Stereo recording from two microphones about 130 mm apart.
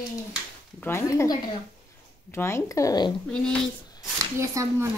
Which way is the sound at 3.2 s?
5° left (ahead or behind).